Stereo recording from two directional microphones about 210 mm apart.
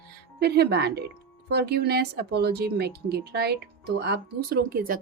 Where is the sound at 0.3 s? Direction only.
50° right (ahead or behind).